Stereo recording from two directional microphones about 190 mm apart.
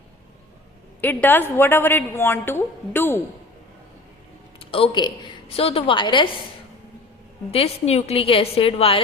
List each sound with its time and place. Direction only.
1.0 s a woman's voice: 10° left (ahead or behind)
4.6 s a woman's voice: 30° left (ahead or behind)
7.5 s a woman's voice: 30° left (ahead or behind)